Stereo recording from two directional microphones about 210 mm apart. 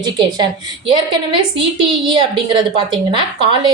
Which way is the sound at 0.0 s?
20° right (ahead or behind).